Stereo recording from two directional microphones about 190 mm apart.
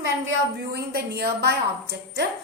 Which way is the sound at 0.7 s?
55° right (ahead or behind).